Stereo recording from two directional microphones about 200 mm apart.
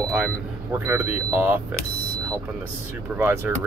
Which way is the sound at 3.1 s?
10° right (ahead or behind).